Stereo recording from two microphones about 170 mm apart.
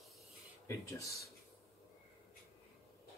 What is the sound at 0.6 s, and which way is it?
Speech, 20° left (ahead or behind).